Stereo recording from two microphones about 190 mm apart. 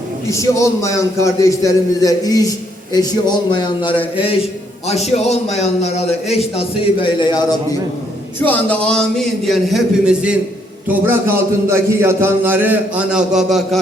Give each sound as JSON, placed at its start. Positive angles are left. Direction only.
{"t": 0.3, "sound": "a man's voice", "side_deg": 15}
{"t": 4.9, "sound": "a man's voice", "side_deg": 35}
{"t": 8.4, "sound": "a man's voice", "side_deg": 10}